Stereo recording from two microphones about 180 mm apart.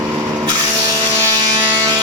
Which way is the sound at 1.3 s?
20° right (ahead or behind).